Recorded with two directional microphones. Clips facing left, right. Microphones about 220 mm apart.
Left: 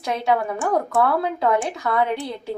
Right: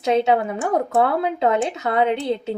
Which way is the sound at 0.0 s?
25° right (ahead or behind).